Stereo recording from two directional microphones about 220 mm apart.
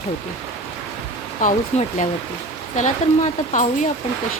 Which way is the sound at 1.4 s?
35° left (ahead or behind).